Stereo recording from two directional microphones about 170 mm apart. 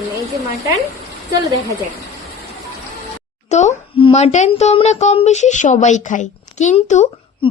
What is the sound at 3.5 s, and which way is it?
Speech, 40° left (ahead or behind).